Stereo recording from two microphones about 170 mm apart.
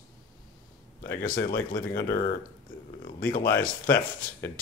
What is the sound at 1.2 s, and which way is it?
Speech, 60° left (ahead or behind).